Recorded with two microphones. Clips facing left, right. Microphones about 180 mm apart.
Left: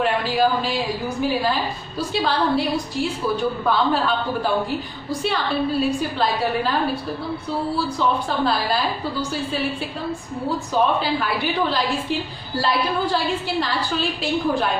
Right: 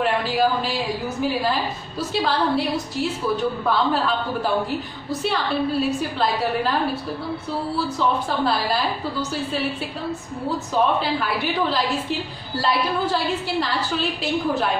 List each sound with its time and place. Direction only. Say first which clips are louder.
0.0 s a woman's voice: left 1 dB; centre (ahead or behind)
8.3 s a woman's voice: left 1 dB; centre (ahead or behind)
10.7 s a woman's voice: even; centre (ahead or behind)